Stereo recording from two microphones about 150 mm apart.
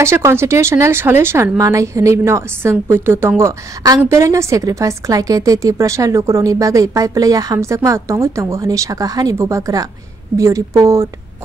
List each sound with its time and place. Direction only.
0.0 s a woman's voice: 15° right (ahead or behind)